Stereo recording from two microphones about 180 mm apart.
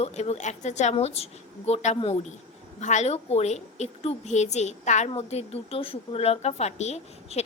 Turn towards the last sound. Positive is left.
turn(degrees=35)  # may be behind; listen again after turning